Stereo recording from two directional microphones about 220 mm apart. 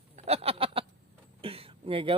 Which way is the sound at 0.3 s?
25° right (ahead or behind).